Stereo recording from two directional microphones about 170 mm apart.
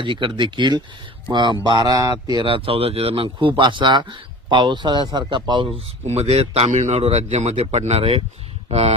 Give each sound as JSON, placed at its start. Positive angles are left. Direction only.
{"t": 0.0, "sound": "speech", "side_deg": -30}
{"t": 6.1, "sound": "a man's voice", "side_deg": -40}